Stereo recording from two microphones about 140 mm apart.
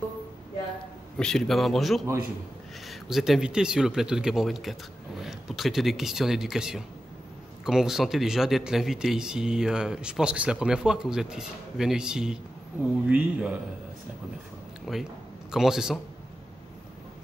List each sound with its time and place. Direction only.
1.1 s a man's voice: 5° left (ahead or behind)
14.9 s speech: 5° right (ahead or behind)